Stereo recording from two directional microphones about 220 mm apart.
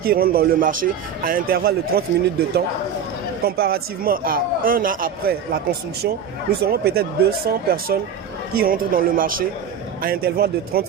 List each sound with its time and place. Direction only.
0.0 s a man's voice: 45° right (ahead or behind)
3.4 s a man's voice: 45° right (ahead or behind)